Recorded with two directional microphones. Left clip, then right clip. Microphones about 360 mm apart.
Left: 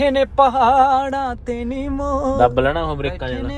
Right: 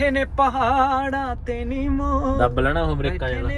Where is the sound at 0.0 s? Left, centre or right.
Centre.